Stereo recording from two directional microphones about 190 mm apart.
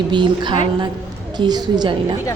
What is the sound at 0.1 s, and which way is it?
Speech, 25° right (ahead or behind).